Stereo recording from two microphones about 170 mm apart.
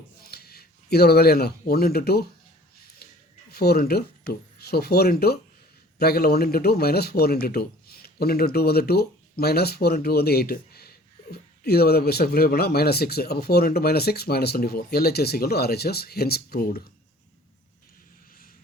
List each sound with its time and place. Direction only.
0.3 s speech: 65° left (ahead or behind)
3.0 s a sound: 65° left (ahead or behind)
3.5 s a man's voice: 65° left (ahead or behind)